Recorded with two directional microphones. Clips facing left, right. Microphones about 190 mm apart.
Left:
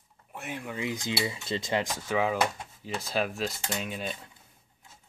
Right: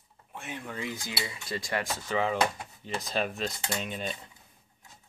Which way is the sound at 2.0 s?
10° left (ahead or behind).